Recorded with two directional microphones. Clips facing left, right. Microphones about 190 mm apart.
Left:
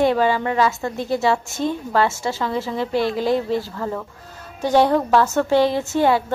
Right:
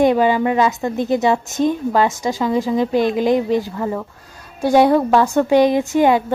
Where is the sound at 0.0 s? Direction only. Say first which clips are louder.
Right 4 dB; 15° right (ahead or behind).